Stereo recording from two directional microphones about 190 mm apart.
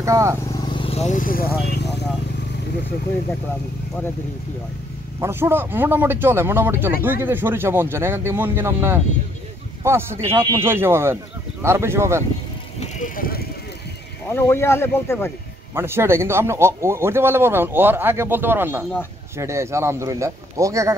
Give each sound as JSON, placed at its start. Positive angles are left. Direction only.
{"t": 0.0, "sound": "speech", "side_deg": -15}
{"t": 0.5, "sound": "speech", "side_deg": 25}
{"t": 5.2, "sound": "speech", "side_deg": -10}
{"t": 12.9, "sound": "vehicle", "side_deg": 45}
{"t": 14.3, "sound": "speech", "side_deg": 10}
{"t": 15.7, "sound": "speech", "side_deg": -15}